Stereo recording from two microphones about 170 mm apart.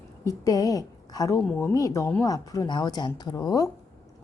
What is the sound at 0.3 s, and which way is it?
A woman's voice, 20° left (ahead or behind).